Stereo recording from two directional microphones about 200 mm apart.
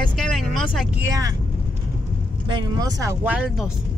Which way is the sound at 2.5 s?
20° right (ahead or behind).